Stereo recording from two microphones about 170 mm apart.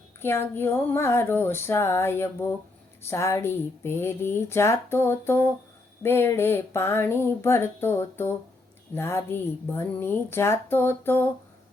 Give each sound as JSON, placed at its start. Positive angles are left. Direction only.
{"t": 0.2, "sound": "speech", "side_deg": 15}